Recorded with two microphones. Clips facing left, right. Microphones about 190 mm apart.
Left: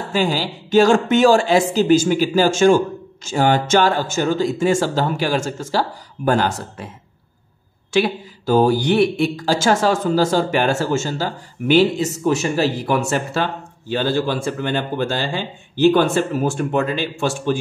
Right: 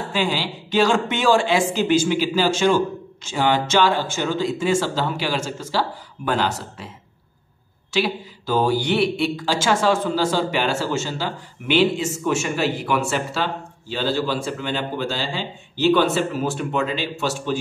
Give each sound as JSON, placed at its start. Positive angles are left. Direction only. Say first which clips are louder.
{"t": 0.1, "sound": "speech", "louder": "left 4 dB", "side_deg": 45}
{"t": 7.9, "sound": "speech", "louder": "left 4 dB", "side_deg": 50}